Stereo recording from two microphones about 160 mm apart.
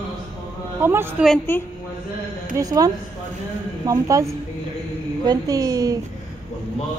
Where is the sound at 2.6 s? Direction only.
20° right (ahead or behind).